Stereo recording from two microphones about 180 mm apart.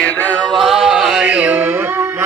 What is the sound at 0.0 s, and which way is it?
Chant, 5° left (ahead or behind).